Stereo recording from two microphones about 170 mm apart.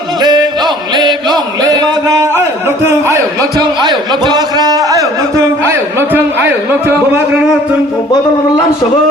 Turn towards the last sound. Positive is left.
turn(degrees=-10)  # may be behind; listen again after turning